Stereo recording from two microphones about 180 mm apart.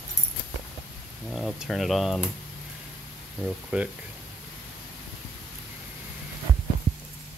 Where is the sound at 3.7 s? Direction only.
10° right (ahead or behind).